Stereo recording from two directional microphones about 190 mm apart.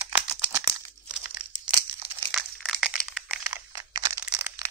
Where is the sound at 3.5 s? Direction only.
15° right (ahead or behind).